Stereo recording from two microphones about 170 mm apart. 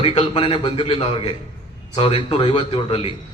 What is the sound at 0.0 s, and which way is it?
A man's voice, 35° left (ahead or behind).